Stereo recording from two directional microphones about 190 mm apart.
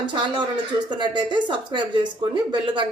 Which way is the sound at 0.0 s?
25° right (ahead or behind).